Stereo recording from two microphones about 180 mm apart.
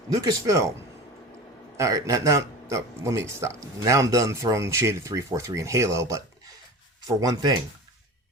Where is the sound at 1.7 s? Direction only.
15° right (ahead or behind).